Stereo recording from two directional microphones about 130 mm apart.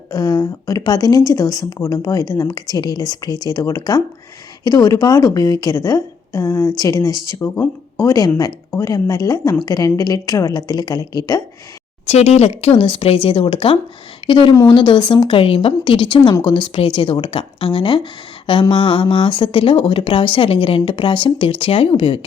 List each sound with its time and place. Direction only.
0.1 s speech: 30° left (ahead or behind)
12.0 s speech: 55° left (ahead or behind)